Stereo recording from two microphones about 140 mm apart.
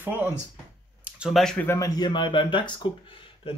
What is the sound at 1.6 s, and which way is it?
Speech, 25° left (ahead or behind).